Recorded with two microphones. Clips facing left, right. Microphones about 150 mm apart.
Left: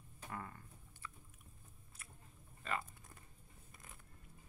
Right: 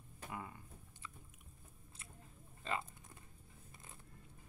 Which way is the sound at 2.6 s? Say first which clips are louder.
Right 1 dB; 25° right (ahead or behind).